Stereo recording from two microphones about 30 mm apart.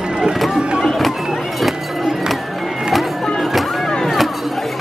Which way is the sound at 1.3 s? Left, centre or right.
Centre.